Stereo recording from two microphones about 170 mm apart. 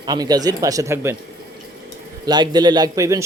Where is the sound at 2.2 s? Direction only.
25° right (ahead or behind).